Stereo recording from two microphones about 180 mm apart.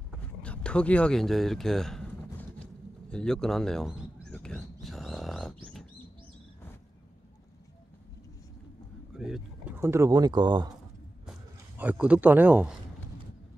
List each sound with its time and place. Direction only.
0.4 s a sound: 5° left (ahead or behind)
9.1 s speech: 5° right (ahead or behind); by 10.7 s 25° right (ahead or behind)
11.8 s a man's voice: 5° right (ahead or behind)